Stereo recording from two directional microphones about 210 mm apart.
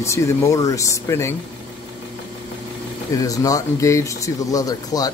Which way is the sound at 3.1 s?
15° left (ahead or behind).